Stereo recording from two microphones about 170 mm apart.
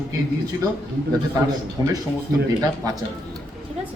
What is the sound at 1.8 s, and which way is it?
Speech, 20° right (ahead or behind).